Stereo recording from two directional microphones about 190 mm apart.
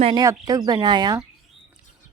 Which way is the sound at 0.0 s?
20° right (ahead or behind).